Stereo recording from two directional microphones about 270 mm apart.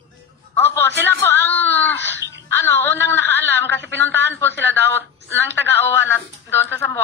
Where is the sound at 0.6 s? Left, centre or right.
Centre.